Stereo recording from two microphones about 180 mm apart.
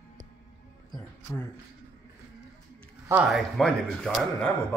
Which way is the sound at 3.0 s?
5° right (ahead or behind).